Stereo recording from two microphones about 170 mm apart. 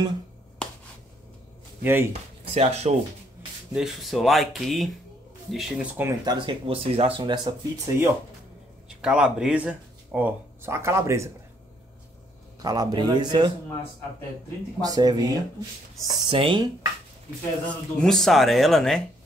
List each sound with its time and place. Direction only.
1.8 s speech: 10° right (ahead or behind)
2.5 s speech: 40° right (ahead or behind)
3.7 s speech: centre (ahead or behind)
6.2 s speech: 30° right (ahead or behind)
8.8 s speech: 5° right (ahead or behind)
12.6 s speech: 20° right (ahead or behind)
14.8 s speech: 20° right (ahead or behind)
18.0 s speech: centre (ahead or behind)